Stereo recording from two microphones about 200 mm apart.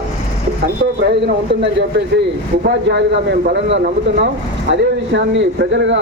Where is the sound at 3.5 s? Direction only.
60° right (ahead or behind).